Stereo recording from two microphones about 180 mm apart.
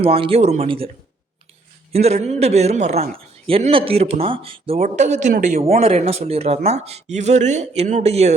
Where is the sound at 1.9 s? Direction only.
35° right (ahead or behind).